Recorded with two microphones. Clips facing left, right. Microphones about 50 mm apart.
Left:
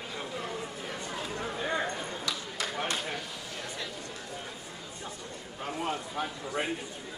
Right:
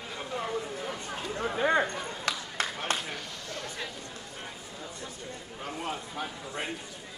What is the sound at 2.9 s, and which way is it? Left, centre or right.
Chop, right.